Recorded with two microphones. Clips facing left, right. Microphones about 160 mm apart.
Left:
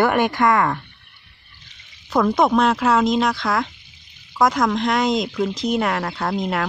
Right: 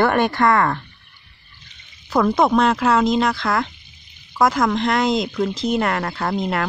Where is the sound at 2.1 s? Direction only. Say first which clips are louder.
Right 1 dB; centre (ahead or behind).